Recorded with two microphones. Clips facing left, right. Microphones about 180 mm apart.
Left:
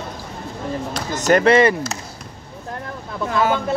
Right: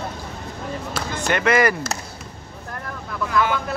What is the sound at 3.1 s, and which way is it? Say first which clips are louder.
Speech: even; 30° left (ahead or behind).